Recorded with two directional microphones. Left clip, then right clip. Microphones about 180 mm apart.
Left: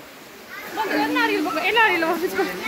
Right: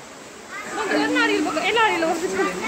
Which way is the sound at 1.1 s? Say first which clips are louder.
Right 1 dB; 65° left (ahead or behind).